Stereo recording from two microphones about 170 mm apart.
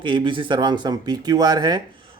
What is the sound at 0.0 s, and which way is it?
Speech, 30° right (ahead or behind).